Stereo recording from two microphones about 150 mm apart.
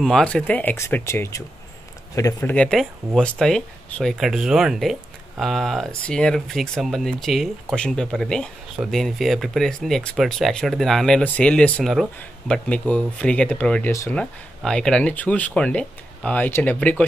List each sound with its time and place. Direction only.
0.0 s speech: 5° left (ahead or behind); by 2.5 s 20° left (ahead or behind)
2.5 s speech: 5° left (ahead or behind)